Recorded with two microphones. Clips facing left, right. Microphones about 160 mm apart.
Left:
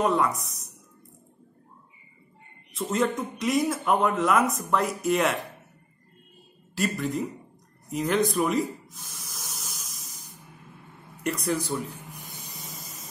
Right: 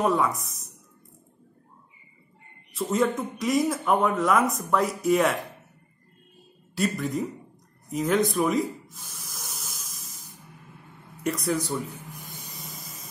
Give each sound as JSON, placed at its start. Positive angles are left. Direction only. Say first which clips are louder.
{"t": 0.0, "sound": "speech", "louder": "even", "side_deg": 0}
{"t": 2.8, "sound": "speech", "louder": "right 2 dB", "side_deg": 0}
{"t": 6.8, "sound": "speech", "louder": "right 1 dB", "side_deg": 0}
{"t": 7.9, "sound": "spray", "louder": "right 1 dB", "side_deg": 0}
{"t": 11.2, "sound": "speech", "louder": "right 1 dB", "side_deg": 0}
{"t": 12.5, "sound": "steam", "louder": "even", "side_deg": 0}